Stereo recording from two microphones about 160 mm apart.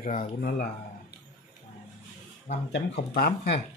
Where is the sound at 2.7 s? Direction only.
80° left.